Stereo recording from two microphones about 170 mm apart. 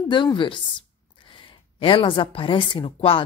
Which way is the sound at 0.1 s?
30° left (ahead or behind).